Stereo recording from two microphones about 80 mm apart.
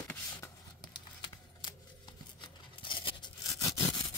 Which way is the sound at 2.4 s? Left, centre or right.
Left.